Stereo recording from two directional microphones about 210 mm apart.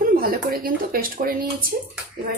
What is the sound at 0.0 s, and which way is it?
A woman's voice, 45° right (ahead or behind).